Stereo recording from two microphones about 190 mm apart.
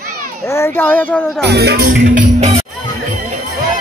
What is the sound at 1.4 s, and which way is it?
Music, 60° right (ahead or behind).